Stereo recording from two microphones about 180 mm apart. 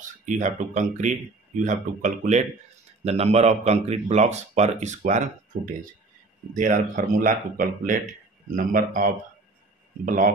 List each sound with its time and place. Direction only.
0.0 s speech: 45° right (ahead or behind)